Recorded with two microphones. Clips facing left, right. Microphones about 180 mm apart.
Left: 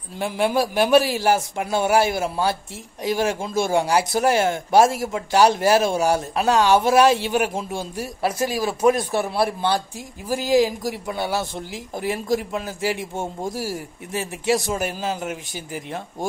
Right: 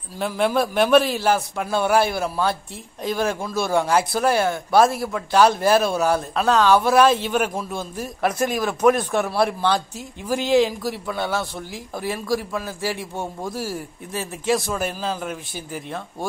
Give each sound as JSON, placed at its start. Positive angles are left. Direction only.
{"t": 0.2, "sound": "a man's voice", "side_deg": 10}